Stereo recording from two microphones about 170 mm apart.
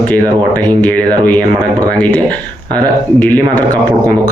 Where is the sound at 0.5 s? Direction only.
10° left (ahead or behind).